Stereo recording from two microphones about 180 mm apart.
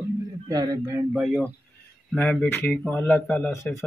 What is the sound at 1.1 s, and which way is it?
Speech, 5° right (ahead or behind).